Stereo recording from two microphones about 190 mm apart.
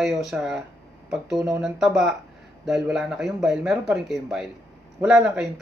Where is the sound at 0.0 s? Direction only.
Centre (ahead or behind).